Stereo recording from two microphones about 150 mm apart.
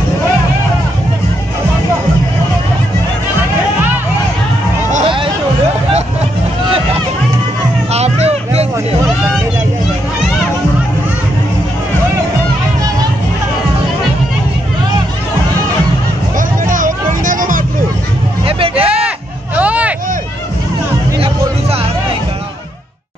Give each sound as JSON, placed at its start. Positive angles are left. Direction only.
{"t": 5.0, "sound": "hubbub", "side_deg": -35}
{"t": 7.9, "sound": "a sound", "side_deg": -45}
{"t": 16.3, "sound": "hubbub", "side_deg": -65}
{"t": 18.8, "sound": "hubbub", "side_deg": -10}